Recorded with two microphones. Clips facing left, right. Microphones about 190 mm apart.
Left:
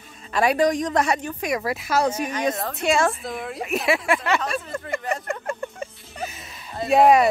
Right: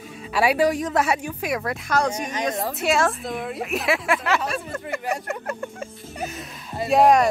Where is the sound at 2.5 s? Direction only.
15° right (ahead or behind).